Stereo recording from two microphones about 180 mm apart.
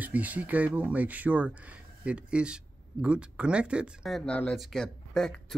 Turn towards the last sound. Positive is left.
turn(degrees=5)  # may be behind; listen again after turning